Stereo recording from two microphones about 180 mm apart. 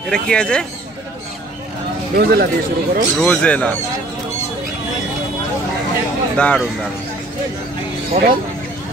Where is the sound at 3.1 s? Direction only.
5° left (ahead or behind).